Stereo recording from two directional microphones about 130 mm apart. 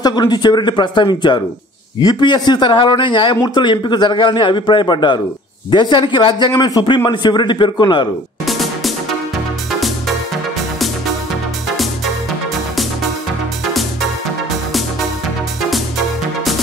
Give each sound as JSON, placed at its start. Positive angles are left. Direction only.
{"t": 0.0, "sound": "a man's voice", "side_deg": 30}
{"t": 8.5, "sound": "music", "side_deg": 0}